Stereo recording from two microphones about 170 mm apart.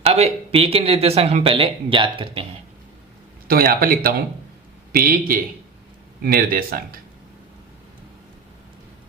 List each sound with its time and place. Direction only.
0.0 s speech: 40° right (ahead or behind)
3.4 s a man's voice: 60° right (ahead or behind)